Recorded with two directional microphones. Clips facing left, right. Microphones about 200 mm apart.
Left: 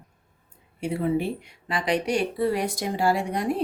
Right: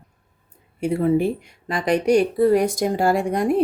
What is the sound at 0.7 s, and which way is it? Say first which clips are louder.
Speech: right 6 dB; 45° right (ahead or behind).